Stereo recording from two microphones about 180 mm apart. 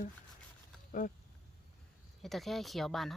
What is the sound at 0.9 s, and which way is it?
Speech, 45° left (ahead or behind).